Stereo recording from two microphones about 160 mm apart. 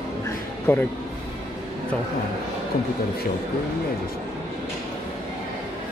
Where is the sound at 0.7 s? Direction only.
15° left (ahead or behind).